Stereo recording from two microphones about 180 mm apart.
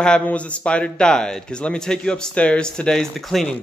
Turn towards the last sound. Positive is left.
turn(degrees=0)  # may be behind; listen again after turning